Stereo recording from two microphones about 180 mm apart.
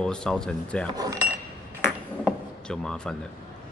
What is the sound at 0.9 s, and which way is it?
Speech, 20° right (ahead or behind).